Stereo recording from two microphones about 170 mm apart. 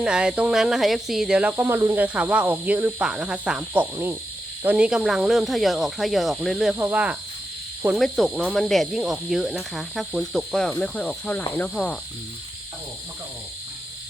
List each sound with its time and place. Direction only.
0.0 s speech: 5° right (ahead or behind)
3.9 s cricket: 15° right (ahead or behind)
4.6 s speech: 5° right (ahead or behind)
6.7 s cricket: 10° right (ahead or behind)
7.8 s speech: 5° right (ahead or behind)
11.5 s cricket: 10° left (ahead or behind)